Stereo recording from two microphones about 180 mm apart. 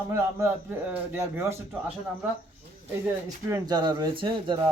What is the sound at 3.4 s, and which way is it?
Speech, 20° right (ahead or behind).